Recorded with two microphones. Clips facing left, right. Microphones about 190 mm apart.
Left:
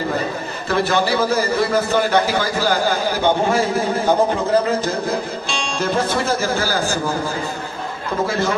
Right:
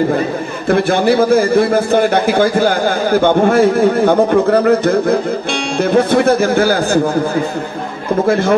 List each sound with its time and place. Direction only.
0.7 s a man's voice: 55° right (ahead or behind)
8.3 s a man's voice: 55° right (ahead or behind)